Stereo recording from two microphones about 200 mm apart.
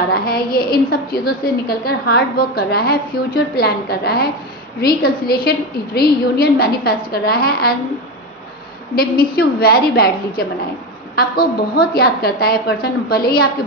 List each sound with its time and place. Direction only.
0.1 s a woman's voice: 50° left (ahead or behind)
8.9 s a woman's voice: 50° left (ahead or behind)